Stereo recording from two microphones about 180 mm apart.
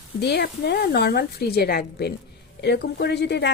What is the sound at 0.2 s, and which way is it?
Speech, 65° left (ahead or behind).